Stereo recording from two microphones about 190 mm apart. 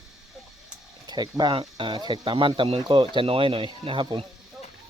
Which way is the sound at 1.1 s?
20° right (ahead or behind).